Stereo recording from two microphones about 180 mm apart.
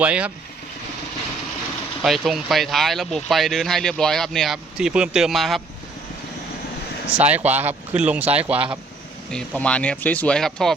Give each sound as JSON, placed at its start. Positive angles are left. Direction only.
{"t": 0.0, "sound": "speech", "side_deg": -5}
{"t": 2.0, "sound": "speech", "side_deg": 0}
{"t": 7.1, "sound": "speech", "side_deg": -10}
{"t": 9.3, "sound": "speech", "side_deg": 5}